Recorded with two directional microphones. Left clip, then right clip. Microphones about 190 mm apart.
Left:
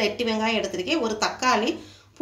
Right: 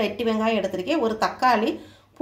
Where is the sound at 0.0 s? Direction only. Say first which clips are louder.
Right 1 dB; 40° right (ahead or behind).